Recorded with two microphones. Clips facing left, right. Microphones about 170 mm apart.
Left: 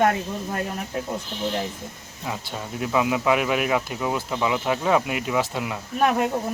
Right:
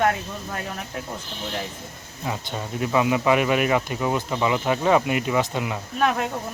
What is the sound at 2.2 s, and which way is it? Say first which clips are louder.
Speech: right 2 dB; centre (ahead or behind).